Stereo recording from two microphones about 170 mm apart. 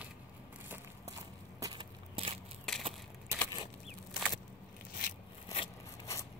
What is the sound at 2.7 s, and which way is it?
Crushing, centre (ahead or behind).